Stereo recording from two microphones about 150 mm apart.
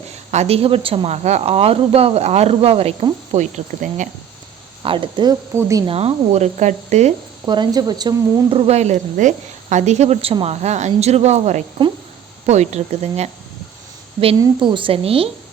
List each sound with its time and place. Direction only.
0.3 s a woman's voice: 45° right (ahead or behind)
4.8 s a woman's voice: 35° right (ahead or behind)
5.5 s a woman's voice: 20° right (ahead or behind)
5.8 s a woman's voice: 40° right (ahead or behind)
7.4 s a woman's voice: 30° right (ahead or behind); by 13.3 s 45° right (ahead or behind)
14.2 s a woman's voice: 35° right (ahead or behind)